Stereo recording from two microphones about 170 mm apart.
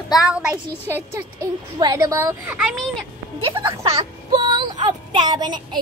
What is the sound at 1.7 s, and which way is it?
Speech, 25° right (ahead or behind).